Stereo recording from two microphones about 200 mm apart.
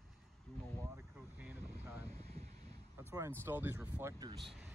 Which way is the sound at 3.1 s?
15° right (ahead or behind).